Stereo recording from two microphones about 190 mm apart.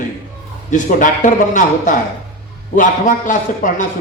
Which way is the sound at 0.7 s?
45° left (ahead or behind).